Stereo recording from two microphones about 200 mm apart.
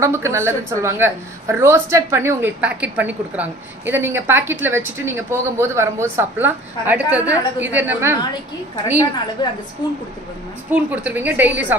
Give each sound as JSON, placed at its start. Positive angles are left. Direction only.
{"t": 0.0, "sound": "speech", "side_deg": -15}
{"t": 9.4, "sound": "a woman's voice", "side_deg": 20}
{"t": 10.7, "sound": "speech", "side_deg": -10}